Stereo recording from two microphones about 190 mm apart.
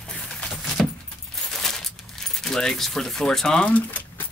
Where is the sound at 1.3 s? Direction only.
Centre (ahead or behind).